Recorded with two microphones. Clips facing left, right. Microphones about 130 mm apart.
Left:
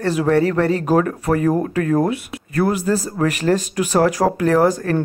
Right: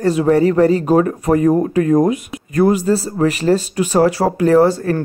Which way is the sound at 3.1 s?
10° right (ahead or behind).